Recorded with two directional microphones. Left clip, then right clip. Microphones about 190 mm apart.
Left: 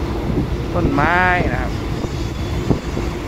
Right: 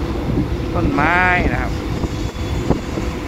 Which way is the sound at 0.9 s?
15° left (ahead or behind).